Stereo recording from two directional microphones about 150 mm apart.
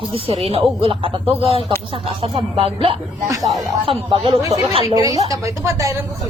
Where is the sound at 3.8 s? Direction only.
35° right (ahead or behind).